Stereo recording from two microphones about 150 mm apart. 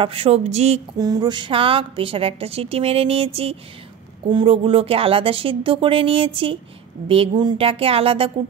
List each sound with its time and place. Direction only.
0.0 s speech: 35° right (ahead or behind)
0.9 s a woman's voice: 25° right (ahead or behind); by 3.3 s 40° right (ahead or behind)
4.3 s a woman's voice: 35° right (ahead or behind)